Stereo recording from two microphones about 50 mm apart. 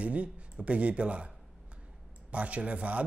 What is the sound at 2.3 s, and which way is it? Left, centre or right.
Speech, right.